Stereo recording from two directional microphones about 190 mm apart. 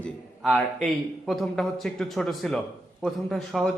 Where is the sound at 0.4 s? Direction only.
Centre (ahead or behind).